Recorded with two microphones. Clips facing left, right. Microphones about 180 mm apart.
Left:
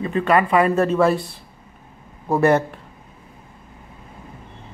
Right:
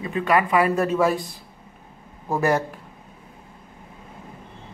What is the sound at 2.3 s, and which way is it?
Speech, centre (ahead or behind).